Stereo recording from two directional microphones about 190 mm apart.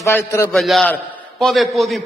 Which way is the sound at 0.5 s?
Centre (ahead or behind).